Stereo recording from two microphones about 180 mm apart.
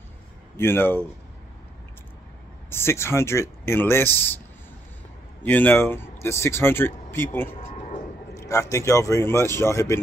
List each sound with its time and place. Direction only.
0.6 s speech: 10° left (ahead or behind)
2.7 s speech: 15° left (ahead or behind)
5.4 s speech: 10° left (ahead or behind)
7.7 s a sound: 45° left (ahead or behind)
8.4 s speech: 15° left (ahead or behind)